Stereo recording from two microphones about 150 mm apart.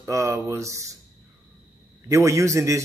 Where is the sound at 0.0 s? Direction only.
20° right (ahead or behind).